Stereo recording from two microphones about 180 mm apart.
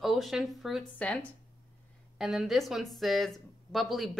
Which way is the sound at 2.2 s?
Centre (ahead or behind).